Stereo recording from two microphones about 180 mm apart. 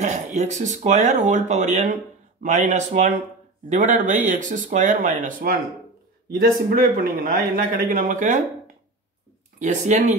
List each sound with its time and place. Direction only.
0.0 s speech: 40° right (ahead or behind)
9.6 s speech: 40° right (ahead or behind)